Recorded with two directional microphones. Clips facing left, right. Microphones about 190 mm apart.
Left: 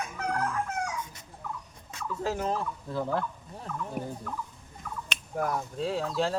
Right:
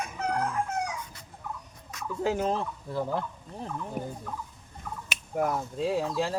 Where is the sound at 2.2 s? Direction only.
20° right (ahead or behind).